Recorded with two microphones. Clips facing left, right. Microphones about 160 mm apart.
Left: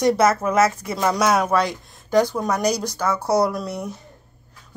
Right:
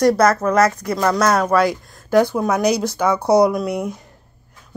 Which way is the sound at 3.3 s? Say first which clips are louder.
Right 6 dB; 20° right (ahead or behind).